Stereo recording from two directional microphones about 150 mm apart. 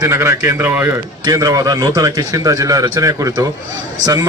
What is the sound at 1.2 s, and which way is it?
A man's voice, 25° right (ahead or behind).